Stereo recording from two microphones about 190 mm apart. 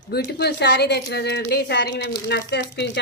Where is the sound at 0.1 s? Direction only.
60° left (ahead or behind).